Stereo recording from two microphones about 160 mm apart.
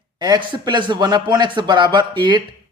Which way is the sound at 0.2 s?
30° right (ahead or behind).